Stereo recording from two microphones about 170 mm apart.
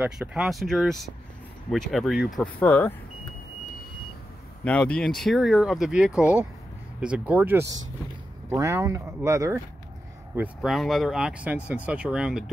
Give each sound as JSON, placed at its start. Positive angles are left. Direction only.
{"t": 0.0, "sound": "speech", "side_deg": -5}
{"t": 4.6, "sound": "speech", "side_deg": 5}
{"t": 10.3, "sound": "speech", "side_deg": -5}